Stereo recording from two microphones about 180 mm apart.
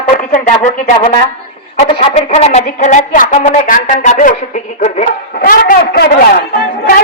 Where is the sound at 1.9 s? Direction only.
30° left (ahead or behind).